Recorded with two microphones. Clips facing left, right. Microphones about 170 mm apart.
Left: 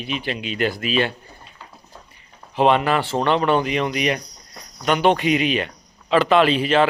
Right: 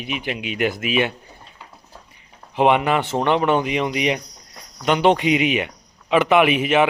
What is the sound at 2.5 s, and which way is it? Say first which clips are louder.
Speech: even; 15° right (ahead or behind).